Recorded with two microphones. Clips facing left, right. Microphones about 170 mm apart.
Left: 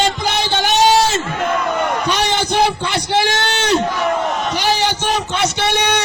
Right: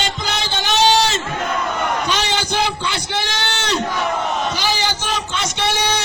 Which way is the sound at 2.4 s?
55° left (ahead or behind).